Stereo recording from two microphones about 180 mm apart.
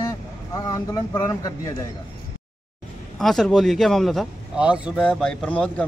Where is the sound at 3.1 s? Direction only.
Centre (ahead or behind).